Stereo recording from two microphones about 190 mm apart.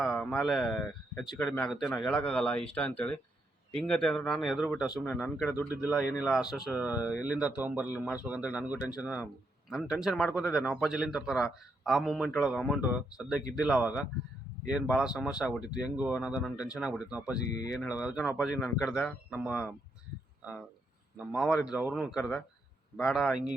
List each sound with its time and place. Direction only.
0.0 s a man's voice: 5° left (ahead or behind)
21.3 s a man's voice: 5° right (ahead or behind)